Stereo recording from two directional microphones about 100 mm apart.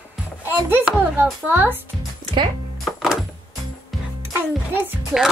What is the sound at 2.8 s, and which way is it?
Music, 5° right (ahead or behind).